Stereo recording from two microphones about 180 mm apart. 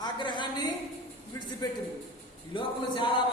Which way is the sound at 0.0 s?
25° left (ahead or behind).